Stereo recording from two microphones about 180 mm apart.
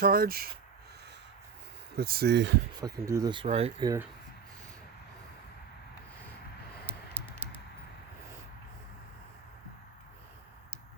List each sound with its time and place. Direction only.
0.0 s speech: 55° right (ahead or behind)
2.0 s speech: 60° right (ahead or behind)
2.8 s speech: 20° right (ahead or behind); by 3.8 s 35° right (ahead or behind)
3.8 s speech: 15° right (ahead or behind)
6.8 s typing: 10° right (ahead or behind)